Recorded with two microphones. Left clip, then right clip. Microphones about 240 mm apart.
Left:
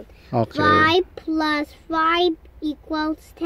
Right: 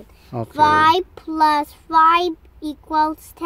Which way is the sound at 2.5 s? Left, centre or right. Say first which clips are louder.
Right 6 dB; right.